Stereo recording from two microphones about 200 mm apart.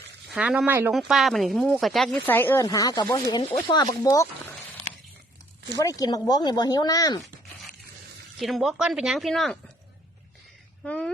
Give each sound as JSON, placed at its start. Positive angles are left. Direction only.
{"t": 0.3, "sound": "speech", "side_deg": -5}
{"t": 5.7, "sound": "speech", "side_deg": 15}
{"t": 8.4, "sound": "speech", "side_deg": 0}
{"t": 10.8, "sound": "speech", "side_deg": 5}